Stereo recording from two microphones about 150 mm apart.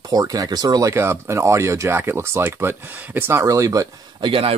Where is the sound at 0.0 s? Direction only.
25° right (ahead or behind).